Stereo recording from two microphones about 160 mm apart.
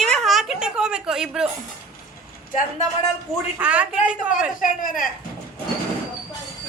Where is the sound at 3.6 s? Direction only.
10° right (ahead or behind).